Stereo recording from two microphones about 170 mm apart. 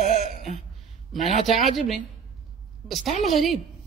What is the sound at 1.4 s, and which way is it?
Speech, centre (ahead or behind).